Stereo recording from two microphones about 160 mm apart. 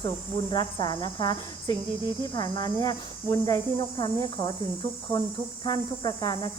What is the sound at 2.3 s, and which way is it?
Speech, 25° left (ahead or behind).